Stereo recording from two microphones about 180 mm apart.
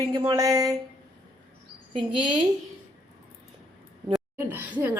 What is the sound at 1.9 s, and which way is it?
Speech, 25° right (ahead or behind).